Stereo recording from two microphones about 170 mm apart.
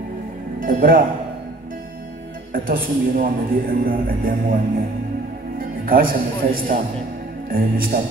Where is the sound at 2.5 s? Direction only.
55° right (ahead or behind).